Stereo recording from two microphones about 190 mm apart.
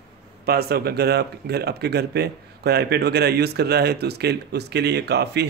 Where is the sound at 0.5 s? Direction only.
55° right (ahead or behind).